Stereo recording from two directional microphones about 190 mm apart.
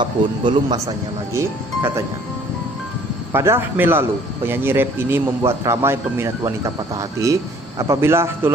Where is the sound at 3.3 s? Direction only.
10° right (ahead or behind).